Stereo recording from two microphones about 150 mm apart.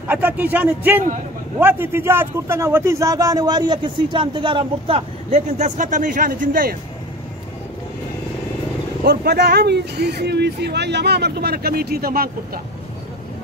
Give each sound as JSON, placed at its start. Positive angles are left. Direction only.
{"t": 0.1, "sound": "a man's voice", "side_deg": -10}
{"t": 9.0, "sound": "speech", "side_deg": -90}